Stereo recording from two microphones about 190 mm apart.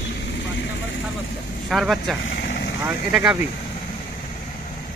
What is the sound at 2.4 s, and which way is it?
Vehicle, 60° left (ahead or behind).